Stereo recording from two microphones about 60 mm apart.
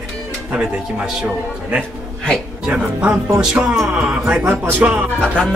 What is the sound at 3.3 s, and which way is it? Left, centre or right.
Music, centre.